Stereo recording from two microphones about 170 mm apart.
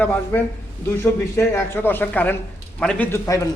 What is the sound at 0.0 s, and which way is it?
A man's voice, 10° left (ahead or behind).